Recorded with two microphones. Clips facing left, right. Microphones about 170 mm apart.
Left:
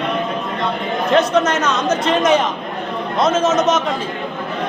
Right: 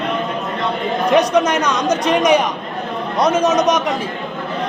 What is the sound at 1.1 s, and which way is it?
Speech, 15° right (ahead or behind).